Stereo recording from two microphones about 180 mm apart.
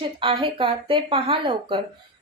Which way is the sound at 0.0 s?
30° right (ahead or behind).